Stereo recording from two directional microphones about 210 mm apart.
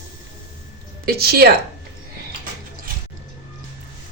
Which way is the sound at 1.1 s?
45° right (ahead or behind).